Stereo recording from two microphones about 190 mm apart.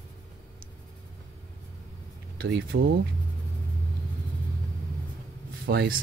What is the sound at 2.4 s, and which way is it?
Speech, 75° right (ahead or behind).